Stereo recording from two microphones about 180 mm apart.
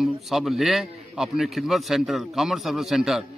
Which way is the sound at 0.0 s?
Centre (ahead or behind).